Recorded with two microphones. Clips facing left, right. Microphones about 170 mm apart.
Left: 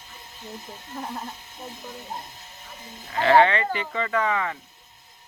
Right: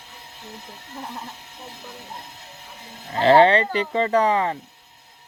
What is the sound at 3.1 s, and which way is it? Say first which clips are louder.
Speech: right 4 dB; 35° right (ahead or behind).